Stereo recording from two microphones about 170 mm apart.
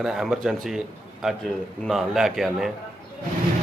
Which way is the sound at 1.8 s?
Centre (ahead or behind).